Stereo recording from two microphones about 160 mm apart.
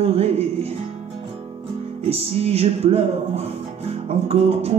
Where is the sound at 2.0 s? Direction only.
40° right (ahead or behind).